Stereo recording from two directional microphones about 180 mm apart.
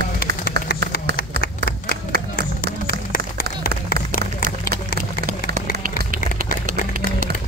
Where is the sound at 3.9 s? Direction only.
55° right (ahead or behind).